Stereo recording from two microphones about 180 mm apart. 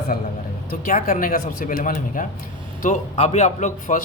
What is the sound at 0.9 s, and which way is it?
Speech, 50° left (ahead or behind).